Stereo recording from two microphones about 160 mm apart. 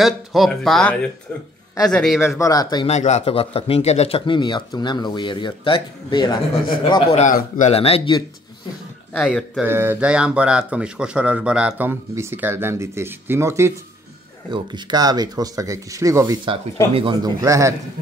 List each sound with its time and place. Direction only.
0.0 s speech: centre (ahead or behind)
2.2 s speech: 20° left (ahead or behind)
2.9 s speech: 45° left (ahead or behind)
7.2 s speech: 55° left (ahead or behind)
7.7 s speech: 40° left (ahead or behind)
9.1 s speech: centre (ahead or behind)
9.7 s a man's voice: 15° right (ahead or behind)
14.5 s speech: 30° right (ahead or behind)
16.9 s speech: 30° right (ahead or behind)
17.4 s speech: 20° right (ahead or behind)